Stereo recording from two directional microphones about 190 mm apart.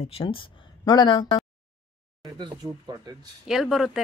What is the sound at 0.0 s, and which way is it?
Speech, 30° left (ahead or behind).